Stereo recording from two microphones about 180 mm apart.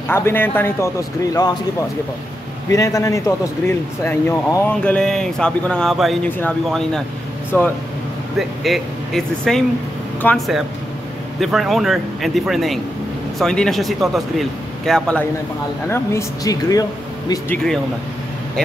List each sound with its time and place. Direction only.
0.1 s a man's voice: 10° left (ahead or behind)
2.7 s a man's voice: 20° left (ahead or behind)
4.9 s a man's voice: 5° left (ahead or behind)
8.4 s speech: centre (ahead or behind)
15.9 s a man's voice: 15° left (ahead or behind)